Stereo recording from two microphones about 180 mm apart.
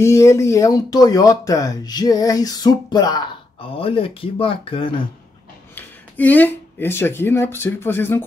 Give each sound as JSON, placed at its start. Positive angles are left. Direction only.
{"t": 0.0, "sound": "speech", "side_deg": 15}
{"t": 5.8, "sound": "speech", "side_deg": 10}